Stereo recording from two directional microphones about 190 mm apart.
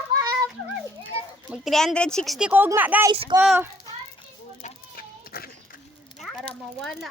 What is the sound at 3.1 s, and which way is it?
Speech, 30° right (ahead or behind).